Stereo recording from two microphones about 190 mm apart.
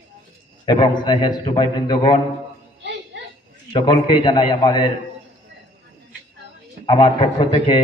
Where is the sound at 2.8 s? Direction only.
65° right (ahead or behind).